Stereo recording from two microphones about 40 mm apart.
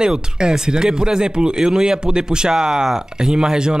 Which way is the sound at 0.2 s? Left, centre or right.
Centre.